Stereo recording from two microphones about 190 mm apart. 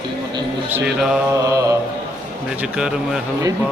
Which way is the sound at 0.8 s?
5° right (ahead or behind).